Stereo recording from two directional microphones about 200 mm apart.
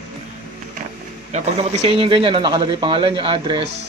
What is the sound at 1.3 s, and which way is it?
A man's voice, 30° right (ahead or behind).